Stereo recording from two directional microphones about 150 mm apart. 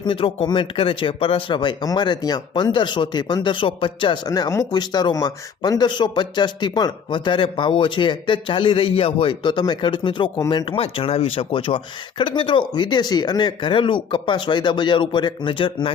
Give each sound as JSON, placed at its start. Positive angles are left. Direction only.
{"t": 0.0, "sound": "speech", "side_deg": 35}
{"t": 4.3, "sound": "speech", "side_deg": 20}